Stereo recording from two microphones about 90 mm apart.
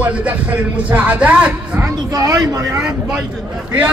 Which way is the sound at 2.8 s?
10° right (ahead or behind).